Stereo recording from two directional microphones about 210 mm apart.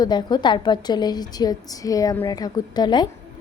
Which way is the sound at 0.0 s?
20° left (ahead or behind).